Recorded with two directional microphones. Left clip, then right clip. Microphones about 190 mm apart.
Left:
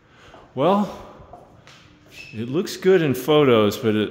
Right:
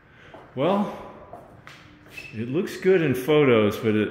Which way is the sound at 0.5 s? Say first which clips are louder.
Left 4 dB; 30° left (ahead or behind).